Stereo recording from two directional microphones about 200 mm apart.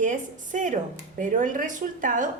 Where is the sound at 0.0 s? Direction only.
40° right (ahead or behind).